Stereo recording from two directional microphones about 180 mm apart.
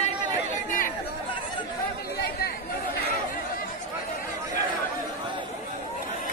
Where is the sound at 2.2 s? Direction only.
60° left (ahead or behind).